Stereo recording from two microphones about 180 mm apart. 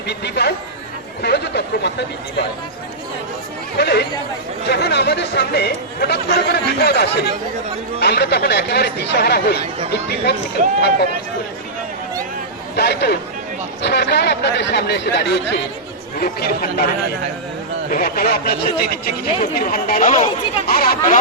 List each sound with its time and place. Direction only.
0.1 s speech: 65° left (ahead or behind)
3.8 s speech: 65° left (ahead or behind)
12.7 s speech: 65° left (ahead or behind)
17.9 s speech: 55° left (ahead or behind)